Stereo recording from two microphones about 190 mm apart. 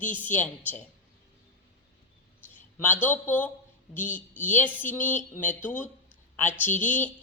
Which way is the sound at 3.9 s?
10° left (ahead or behind).